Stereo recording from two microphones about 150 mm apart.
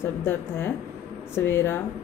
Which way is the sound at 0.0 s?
15° left (ahead or behind).